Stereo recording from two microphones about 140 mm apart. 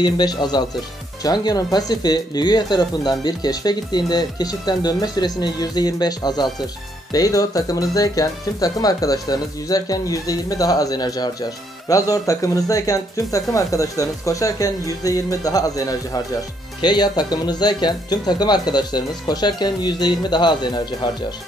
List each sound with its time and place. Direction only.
0.0 s speech: 30° left (ahead or behind)